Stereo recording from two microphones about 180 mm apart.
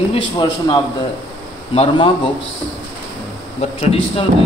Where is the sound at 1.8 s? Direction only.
30° left (ahead or behind).